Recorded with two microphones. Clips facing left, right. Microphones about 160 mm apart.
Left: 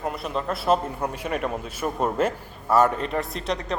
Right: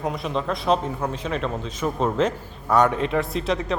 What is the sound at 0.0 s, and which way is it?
Speech, centre (ahead or behind).